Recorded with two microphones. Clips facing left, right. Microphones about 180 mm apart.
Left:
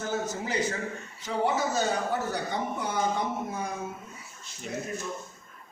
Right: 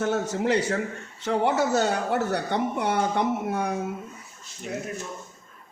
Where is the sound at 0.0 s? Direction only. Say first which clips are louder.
Right 6 dB; 70° right (ahead or behind).